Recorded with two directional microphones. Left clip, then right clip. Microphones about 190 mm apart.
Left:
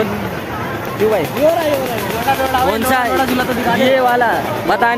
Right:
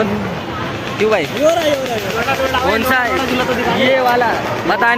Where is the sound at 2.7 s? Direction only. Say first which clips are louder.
Right 1 dB; 20° left (ahead or behind).